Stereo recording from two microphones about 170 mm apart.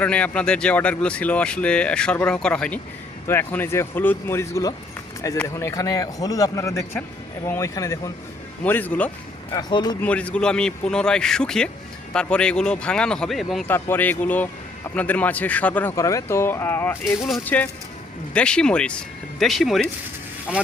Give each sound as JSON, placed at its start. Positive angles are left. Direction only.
{"t": 0.0, "sound": "a man's voice", "side_deg": 5}
{"t": 9.5, "sound": "a man's voice", "side_deg": 25}
{"t": 10.0, "sound": "a man's voice", "side_deg": 10}
{"t": 13.7, "sound": "a man's voice", "side_deg": 15}
{"t": 17.2, "sound": "a man's voice", "side_deg": 0}